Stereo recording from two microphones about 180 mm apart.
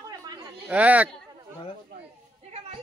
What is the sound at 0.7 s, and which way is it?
Speech, 10° right (ahead or behind).